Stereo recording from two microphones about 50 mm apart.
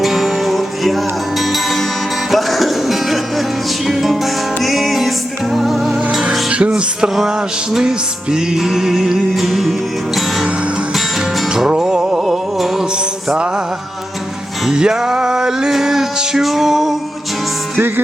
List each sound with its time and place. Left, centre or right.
0.0 s music: centre
6.5 s music: right; by 9.7 s centre
11.5 s music: centre
12.2 s a sound: centre
14.7 s music: centre
17.7 s music: right